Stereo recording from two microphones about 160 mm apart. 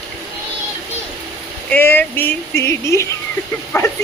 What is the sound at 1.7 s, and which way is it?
Speech, 10° left (ahead or behind).